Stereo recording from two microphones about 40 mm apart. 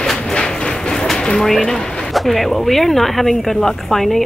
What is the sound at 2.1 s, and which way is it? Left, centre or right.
Speech, centre.